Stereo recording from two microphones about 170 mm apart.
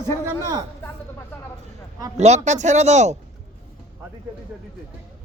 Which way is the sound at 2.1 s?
40° right (ahead or behind).